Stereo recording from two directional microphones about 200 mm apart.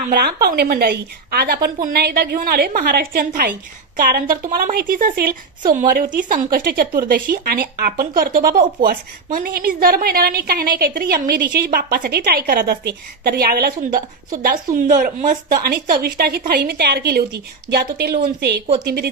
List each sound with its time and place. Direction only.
0.1 s speech: 50° right (ahead or behind)